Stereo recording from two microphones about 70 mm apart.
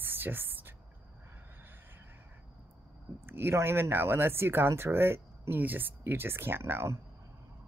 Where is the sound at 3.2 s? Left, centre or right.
Right.